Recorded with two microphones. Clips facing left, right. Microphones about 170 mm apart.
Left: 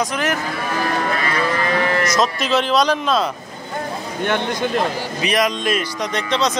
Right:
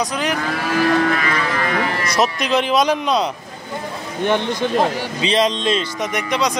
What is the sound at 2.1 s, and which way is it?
Speech, 15° right (ahead or behind).